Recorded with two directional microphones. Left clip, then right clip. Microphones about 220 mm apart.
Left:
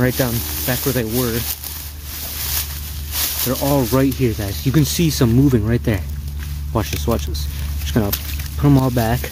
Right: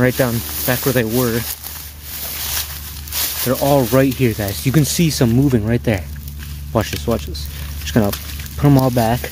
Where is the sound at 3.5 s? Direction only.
25° right (ahead or behind).